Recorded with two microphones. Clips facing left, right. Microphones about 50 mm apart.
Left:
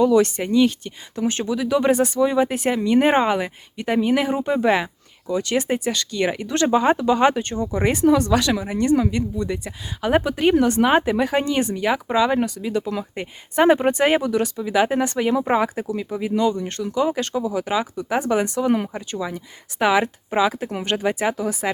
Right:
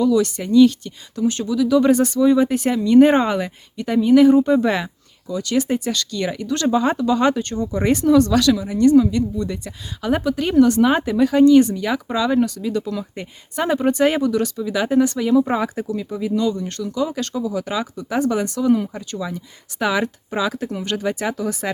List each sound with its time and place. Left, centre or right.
0.0 s speech: left; by 3.5 s centre
3.8 s speech: left
5.3 s speech: left
15.5 s speech: centre